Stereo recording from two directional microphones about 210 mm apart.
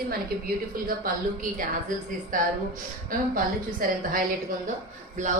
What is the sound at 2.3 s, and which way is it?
A woman's voice, 40° right (ahead or behind).